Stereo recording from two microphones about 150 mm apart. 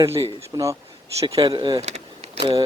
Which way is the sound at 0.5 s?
20° right (ahead or behind).